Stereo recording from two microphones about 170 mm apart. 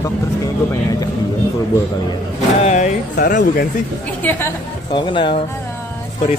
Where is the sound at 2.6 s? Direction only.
45° left (ahead or behind).